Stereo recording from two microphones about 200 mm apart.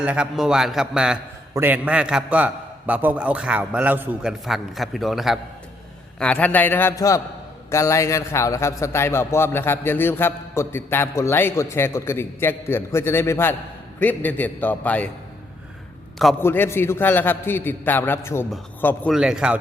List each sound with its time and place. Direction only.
0.0 s a man's voice: 5° right (ahead or behind)
16.4 s a man's voice: 10° left (ahead or behind)
19.1 s a man's voice: 5° right (ahead or behind)